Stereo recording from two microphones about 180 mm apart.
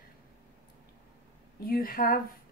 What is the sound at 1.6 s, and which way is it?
Speech, 55° left (ahead or behind).